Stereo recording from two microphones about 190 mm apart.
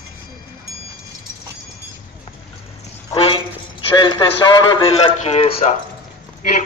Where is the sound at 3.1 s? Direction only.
30° left (ahead or behind).